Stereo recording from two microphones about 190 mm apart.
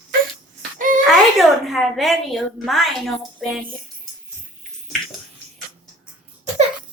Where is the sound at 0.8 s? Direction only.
45° right (ahead or behind).